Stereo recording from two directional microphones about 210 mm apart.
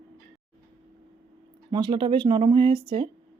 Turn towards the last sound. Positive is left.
turn(degrees=-25)  # may be behind; listen again after turning